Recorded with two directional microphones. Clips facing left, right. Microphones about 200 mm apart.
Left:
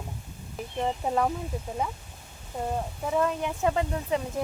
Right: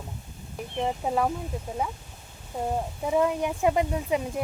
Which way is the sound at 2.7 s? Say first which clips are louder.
Right 3 dB; 15° right (ahead or behind).